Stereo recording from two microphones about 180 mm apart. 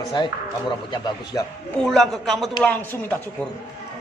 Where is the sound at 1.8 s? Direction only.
Centre (ahead or behind).